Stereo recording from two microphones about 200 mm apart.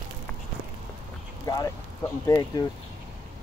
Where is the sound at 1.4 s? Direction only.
20° left (ahead or behind).